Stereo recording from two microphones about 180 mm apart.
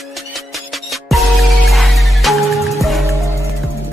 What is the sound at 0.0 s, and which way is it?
Music, centre (ahead or behind).